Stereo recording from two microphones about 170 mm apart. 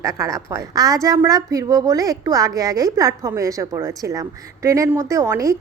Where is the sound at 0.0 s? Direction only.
20° right (ahead or behind).